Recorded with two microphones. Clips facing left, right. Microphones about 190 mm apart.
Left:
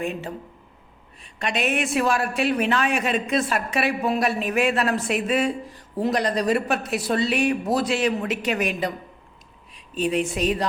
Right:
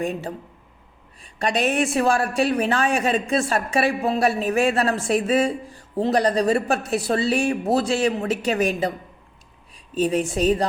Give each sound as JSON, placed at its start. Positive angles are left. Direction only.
{"t": 0.0, "sound": "a woman's voice", "side_deg": -35}
{"t": 10.0, "sound": "a woman's voice", "side_deg": -35}